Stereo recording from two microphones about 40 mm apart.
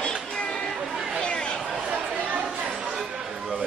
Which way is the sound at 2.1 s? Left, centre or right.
Right.